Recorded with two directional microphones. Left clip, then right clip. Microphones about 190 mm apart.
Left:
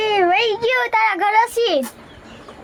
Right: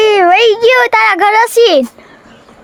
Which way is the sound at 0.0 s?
65° right (ahead or behind).